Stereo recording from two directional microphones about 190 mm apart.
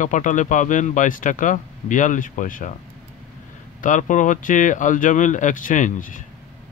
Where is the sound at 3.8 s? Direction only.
40° left (ahead or behind).